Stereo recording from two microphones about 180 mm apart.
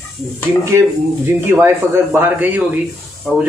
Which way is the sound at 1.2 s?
10° right (ahead or behind).